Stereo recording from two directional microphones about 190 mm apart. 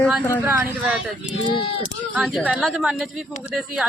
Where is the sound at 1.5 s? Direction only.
25° left (ahead or behind).